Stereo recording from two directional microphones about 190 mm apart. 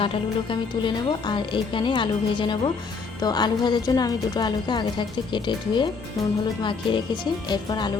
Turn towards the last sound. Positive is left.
turn(degrees=25)  # may be behind; listen again after turning